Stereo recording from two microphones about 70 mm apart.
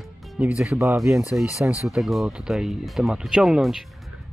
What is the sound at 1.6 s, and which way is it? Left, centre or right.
Speech, right.